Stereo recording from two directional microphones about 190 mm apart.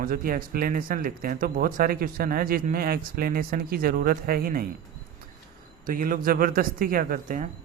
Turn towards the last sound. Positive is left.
turn(degrees=-50)  # may be behind; listen again after turning